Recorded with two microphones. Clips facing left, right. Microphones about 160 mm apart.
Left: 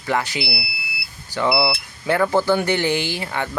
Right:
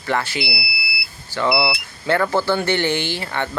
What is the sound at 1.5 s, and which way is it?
Speech, 20° right (ahead or behind).